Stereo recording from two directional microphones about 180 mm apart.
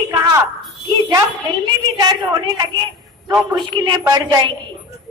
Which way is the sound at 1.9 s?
20° right (ahead or behind).